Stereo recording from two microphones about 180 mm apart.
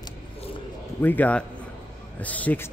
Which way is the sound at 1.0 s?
10° left (ahead or behind).